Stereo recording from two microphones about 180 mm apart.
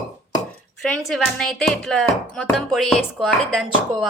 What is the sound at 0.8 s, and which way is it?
Speech, centre (ahead or behind).